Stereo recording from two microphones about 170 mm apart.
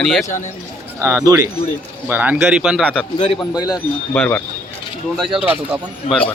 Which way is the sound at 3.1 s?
30° left (ahead or behind).